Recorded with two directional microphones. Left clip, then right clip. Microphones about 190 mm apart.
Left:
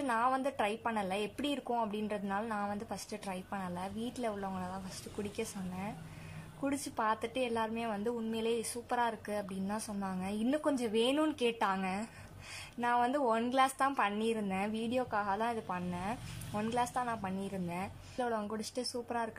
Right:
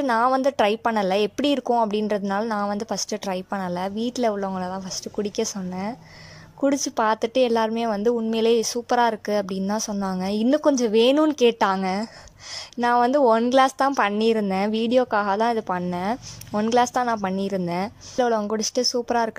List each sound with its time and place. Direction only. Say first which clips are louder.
0.0 s a woman's voice: right 12 dB; 40° right (ahead or behind)